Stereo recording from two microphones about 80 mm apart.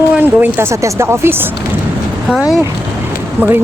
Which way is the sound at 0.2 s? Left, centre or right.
Right.